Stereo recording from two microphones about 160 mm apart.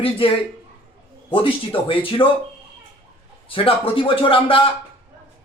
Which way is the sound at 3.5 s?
35° left (ahead or behind).